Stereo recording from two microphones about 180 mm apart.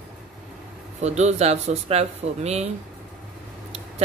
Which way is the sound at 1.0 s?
40° right (ahead or behind).